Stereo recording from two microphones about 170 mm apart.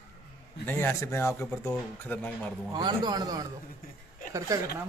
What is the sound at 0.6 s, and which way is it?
Speech, 10° left (ahead or behind).